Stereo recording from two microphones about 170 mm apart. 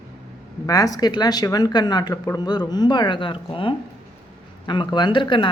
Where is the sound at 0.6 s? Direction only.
20° left (ahead or behind).